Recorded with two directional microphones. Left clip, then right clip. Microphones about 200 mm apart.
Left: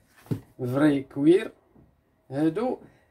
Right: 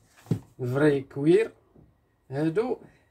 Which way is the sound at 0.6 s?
20° left (ahead or behind).